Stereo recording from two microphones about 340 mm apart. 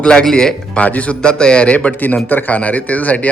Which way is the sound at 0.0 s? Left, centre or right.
Centre.